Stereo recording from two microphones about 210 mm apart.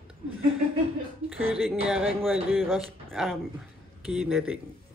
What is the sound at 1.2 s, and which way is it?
Speech, 30° right (ahead or behind).